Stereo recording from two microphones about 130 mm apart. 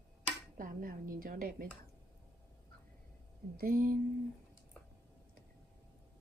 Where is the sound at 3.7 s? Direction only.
90° right.